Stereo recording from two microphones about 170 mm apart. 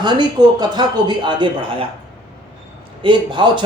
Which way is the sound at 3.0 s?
30° right (ahead or behind).